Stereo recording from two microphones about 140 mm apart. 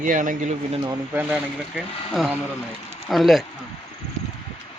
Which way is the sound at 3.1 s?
Centre (ahead or behind).